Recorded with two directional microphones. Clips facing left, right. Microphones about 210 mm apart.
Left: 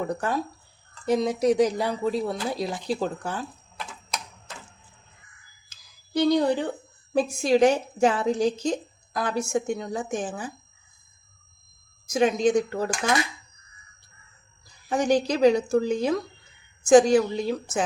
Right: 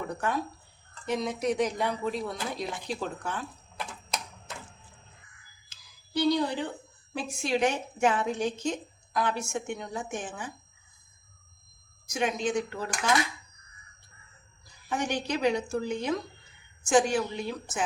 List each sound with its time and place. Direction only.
0.1 s speech: 35° left (ahead or behind)
6.1 s a woman's voice: 45° left (ahead or behind)
12.1 s speech: 40° left (ahead or behind)
14.8 s speech: 40° left (ahead or behind)